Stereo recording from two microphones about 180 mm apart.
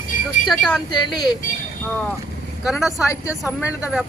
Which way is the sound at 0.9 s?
25° left (ahead or behind).